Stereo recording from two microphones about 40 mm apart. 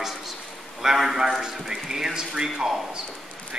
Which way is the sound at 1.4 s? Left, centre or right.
Centre.